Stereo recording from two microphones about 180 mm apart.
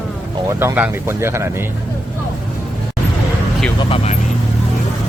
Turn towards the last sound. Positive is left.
turn(degrees=30)  # may be behind; listen again after turning